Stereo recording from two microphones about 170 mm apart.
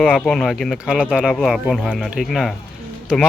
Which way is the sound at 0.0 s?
5° left (ahead or behind).